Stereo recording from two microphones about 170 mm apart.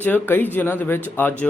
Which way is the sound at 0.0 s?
10° left (ahead or behind).